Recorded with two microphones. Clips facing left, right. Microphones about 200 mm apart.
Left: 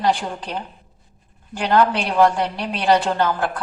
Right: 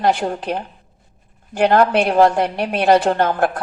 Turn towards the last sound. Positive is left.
turn(degrees=-55)  # may be behind; listen again after turning